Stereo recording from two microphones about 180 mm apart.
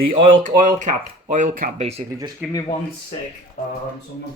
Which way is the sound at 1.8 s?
35° right (ahead or behind).